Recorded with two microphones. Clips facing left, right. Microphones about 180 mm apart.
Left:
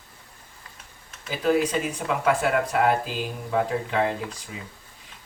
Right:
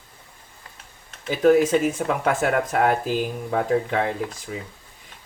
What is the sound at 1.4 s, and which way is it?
Speech, 50° right (ahead or behind).